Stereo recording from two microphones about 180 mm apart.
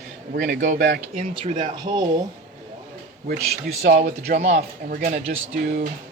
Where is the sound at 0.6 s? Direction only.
50° right (ahead or behind).